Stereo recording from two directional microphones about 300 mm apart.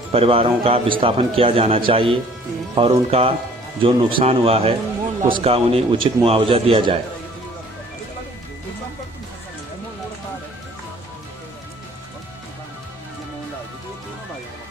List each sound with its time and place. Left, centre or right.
0.1 s a man's voice: centre